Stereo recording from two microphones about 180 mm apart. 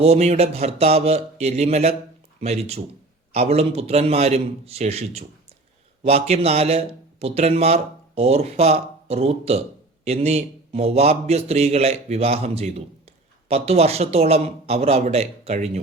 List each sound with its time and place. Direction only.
0.0 s a man's voice: 35° right (ahead or behind)